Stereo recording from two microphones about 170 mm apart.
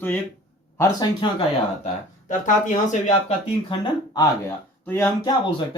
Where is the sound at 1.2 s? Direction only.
30° left (ahead or behind).